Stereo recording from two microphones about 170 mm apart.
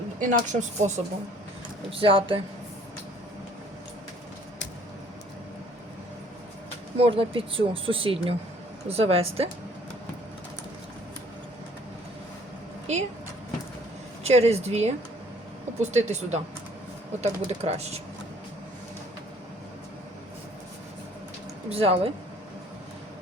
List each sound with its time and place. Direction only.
0.2 s speech: 45° right (ahead or behind)
1.9 s speech: 30° right (ahead or behind)
6.9 s speech: 35° right (ahead or behind)
12.9 s speech: 40° right (ahead or behind)
14.3 s speech: 40° right (ahead or behind)
21.7 s speech: 35° right (ahead or behind)